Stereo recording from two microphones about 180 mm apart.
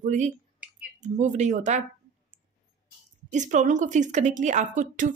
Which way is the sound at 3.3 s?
45° right (ahead or behind).